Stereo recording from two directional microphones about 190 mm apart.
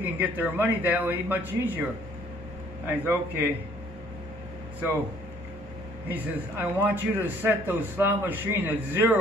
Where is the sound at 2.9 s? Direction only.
10° right (ahead or behind).